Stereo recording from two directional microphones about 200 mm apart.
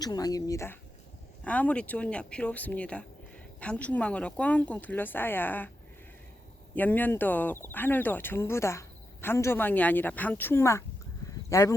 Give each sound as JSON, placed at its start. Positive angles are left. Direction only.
{"t": 0.0, "sound": "speech", "side_deg": 20}
{"t": 6.7, "sound": "speech", "side_deg": 10}